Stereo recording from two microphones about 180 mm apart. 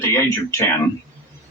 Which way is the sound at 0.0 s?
15° left (ahead or behind).